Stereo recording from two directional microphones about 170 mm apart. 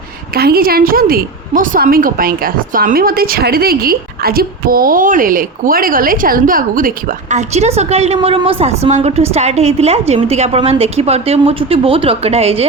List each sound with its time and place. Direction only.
0.3 s a woman's voice: 65° right (ahead or behind); by 12.6 s 35° right (ahead or behind)